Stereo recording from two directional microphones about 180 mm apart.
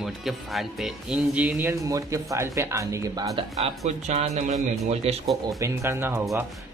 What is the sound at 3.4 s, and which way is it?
Speech, 35° right (ahead or behind).